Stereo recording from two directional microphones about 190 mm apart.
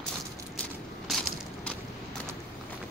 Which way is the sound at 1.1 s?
5° left (ahead or behind).